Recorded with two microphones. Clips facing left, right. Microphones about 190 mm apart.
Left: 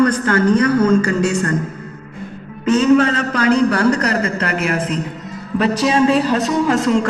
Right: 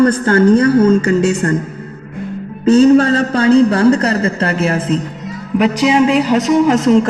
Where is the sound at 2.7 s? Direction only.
30° right (ahead or behind).